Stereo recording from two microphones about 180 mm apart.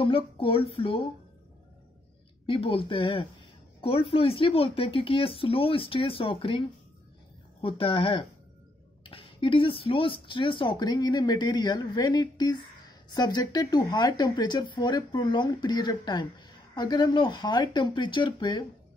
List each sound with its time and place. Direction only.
0.0 s speech: 30° left (ahead or behind)
2.4 s speech: 30° left (ahead or behind)
7.6 s speech: 30° left (ahead or behind)